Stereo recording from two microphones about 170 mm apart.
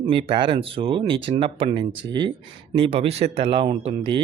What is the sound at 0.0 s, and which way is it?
Speech, 30° right (ahead or behind).